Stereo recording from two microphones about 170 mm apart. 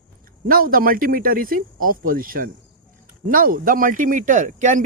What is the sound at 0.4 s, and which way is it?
Speech, 55° right (ahead or behind).